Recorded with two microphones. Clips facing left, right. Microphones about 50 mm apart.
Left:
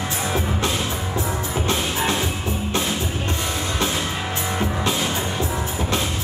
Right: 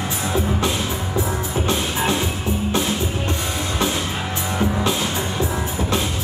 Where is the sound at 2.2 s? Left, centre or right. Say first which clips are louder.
Right 2 dB; centre.